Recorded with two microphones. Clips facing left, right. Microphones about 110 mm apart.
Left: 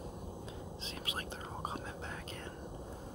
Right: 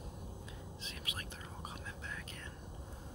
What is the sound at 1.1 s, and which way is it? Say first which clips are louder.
Whispering: left 6 dB; 30° left (ahead or behind).